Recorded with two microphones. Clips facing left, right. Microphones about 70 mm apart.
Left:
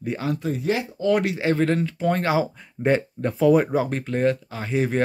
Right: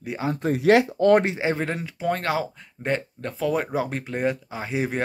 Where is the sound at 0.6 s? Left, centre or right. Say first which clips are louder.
Right 7 dB; right.